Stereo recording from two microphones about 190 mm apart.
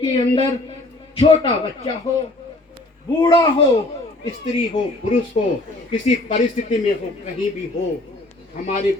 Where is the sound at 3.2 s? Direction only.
20° left (ahead or behind).